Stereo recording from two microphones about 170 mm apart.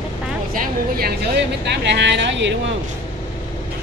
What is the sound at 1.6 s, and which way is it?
Speech, 90° right.